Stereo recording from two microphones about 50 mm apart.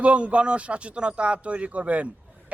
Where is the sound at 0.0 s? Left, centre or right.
Right.